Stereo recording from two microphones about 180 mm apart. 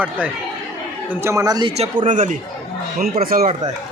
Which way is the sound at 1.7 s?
35° right (ahead or behind).